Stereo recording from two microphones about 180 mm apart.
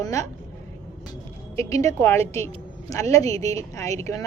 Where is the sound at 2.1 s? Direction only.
35° right (ahead or behind).